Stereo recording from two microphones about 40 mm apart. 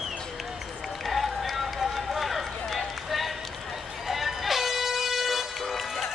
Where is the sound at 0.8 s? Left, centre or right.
Centre.